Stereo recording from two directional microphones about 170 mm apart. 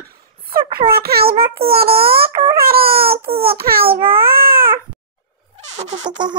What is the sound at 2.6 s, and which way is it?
Baby cry, 60° right (ahead or behind).